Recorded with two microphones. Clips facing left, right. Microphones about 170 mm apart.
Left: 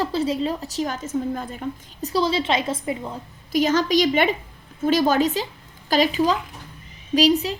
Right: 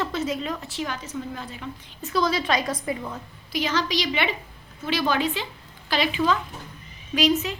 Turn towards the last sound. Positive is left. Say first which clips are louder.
# left 4 dB
turn(degrees=35)  # may be behind; listen again after turning